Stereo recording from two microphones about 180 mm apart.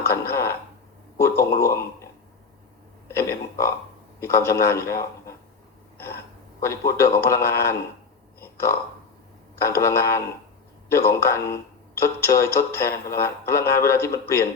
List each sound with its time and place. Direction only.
0.1 s speech: 15° left (ahead or behind)
3.1 s speech: 15° left (ahead or behind)
6.6 s speech: 15° left (ahead or behind)
9.6 s speech: 15° left (ahead or behind)